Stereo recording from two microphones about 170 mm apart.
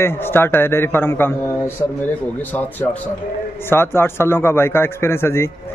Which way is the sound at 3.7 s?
15° left (ahead or behind).